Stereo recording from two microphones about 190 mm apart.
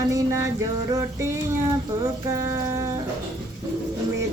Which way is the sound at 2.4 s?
15° right (ahead or behind).